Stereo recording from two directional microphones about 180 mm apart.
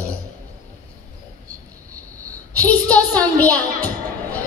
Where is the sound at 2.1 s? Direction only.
20° right (ahead or behind).